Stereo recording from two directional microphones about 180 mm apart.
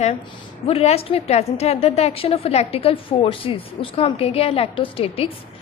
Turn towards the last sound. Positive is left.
turn(degrees=30)  # may be behind; listen again after turning